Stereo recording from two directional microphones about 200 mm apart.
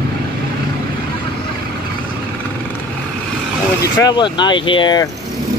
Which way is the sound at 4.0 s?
20° left (ahead or behind).